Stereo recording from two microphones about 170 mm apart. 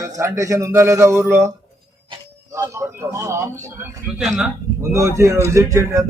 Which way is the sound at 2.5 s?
15° right (ahead or behind).